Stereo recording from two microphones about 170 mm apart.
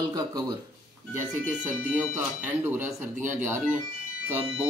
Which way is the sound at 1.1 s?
10° right (ahead or behind).